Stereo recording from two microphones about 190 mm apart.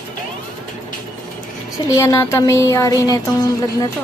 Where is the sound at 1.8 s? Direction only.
15° left (ahead or behind).